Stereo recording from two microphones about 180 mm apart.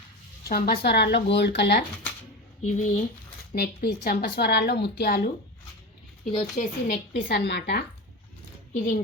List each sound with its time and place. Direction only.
0.4 s a woman's voice: 60° left (ahead or behind)
2.6 s speech: 40° left (ahead or behind)
3.5 s a woman's voice: 60° left (ahead or behind)
6.3 s a woman's voice: 45° left (ahead or behind); by 7.9 s 65° left (ahead or behind)